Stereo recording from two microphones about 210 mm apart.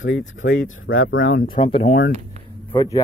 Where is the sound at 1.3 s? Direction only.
40° left (ahead or behind).